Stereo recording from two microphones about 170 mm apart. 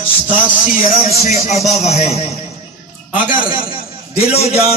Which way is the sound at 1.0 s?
40° left (ahead or behind).